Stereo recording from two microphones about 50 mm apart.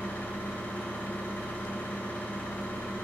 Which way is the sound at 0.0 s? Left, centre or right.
Left.